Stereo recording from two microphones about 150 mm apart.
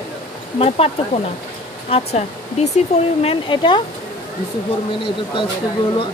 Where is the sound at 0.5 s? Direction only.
40° left (ahead or behind).